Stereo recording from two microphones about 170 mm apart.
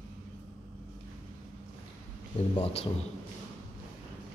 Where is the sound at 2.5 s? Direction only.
35° left (ahead or behind).